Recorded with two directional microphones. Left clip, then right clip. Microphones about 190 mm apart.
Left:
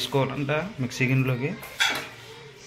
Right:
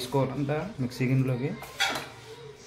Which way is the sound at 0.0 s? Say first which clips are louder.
Left 3 dB; centre (ahead or behind).